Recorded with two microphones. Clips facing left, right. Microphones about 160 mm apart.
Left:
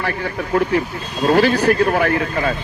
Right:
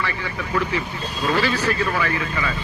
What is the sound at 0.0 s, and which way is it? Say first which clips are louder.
A man's voice: left 5 dB; 50° left (ahead or behind).